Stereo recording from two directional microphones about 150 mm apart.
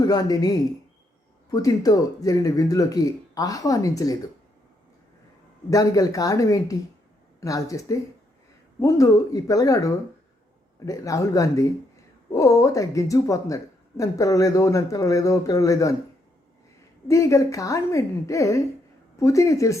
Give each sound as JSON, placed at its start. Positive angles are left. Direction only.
{"t": 0.0, "sound": "a woman's voice", "side_deg": 25}
{"t": 5.7, "sound": "a woman's voice", "side_deg": 25}
{"t": 17.1, "sound": "a woman's voice", "side_deg": 20}